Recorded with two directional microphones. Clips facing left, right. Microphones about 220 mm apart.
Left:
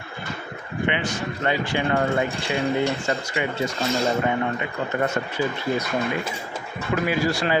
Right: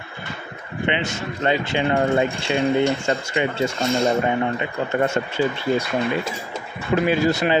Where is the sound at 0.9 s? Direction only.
25° right (ahead or behind).